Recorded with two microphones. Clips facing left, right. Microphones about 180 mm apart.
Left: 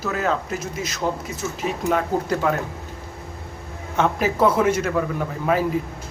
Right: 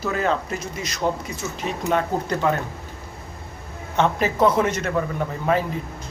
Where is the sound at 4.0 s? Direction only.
5° left (ahead or behind).